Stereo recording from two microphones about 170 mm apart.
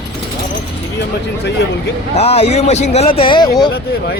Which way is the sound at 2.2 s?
35° left (ahead or behind).